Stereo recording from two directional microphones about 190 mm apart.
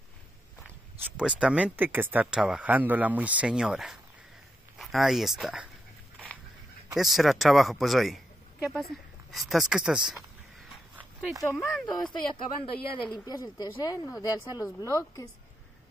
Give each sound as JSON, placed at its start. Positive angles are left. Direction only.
{"t": 1.1, "sound": "speech", "side_deg": -5}
{"t": 7.0, "sound": "speech", "side_deg": 0}
{"t": 10.7, "sound": "dog", "side_deg": -5}
{"t": 11.4, "sound": "speech", "side_deg": 10}
{"t": 11.8, "sound": "a woman's voice", "side_deg": 20}